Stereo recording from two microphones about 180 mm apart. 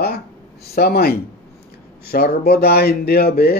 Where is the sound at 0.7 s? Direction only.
60° left (ahead or behind).